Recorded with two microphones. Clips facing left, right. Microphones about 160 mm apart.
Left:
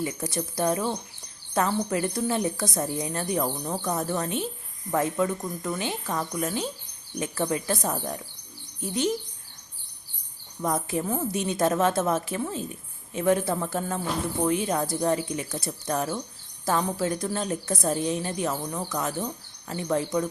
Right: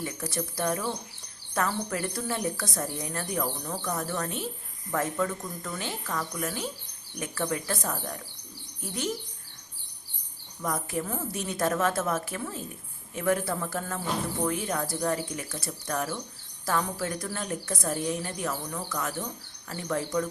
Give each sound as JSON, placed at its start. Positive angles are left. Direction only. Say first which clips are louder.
{"t": 0.0, "sound": "a woman's voice", "louder": "left 3 dB", "side_deg": 20}
{"t": 10.6, "sound": "a woman's voice", "louder": "left 4 dB", "side_deg": 20}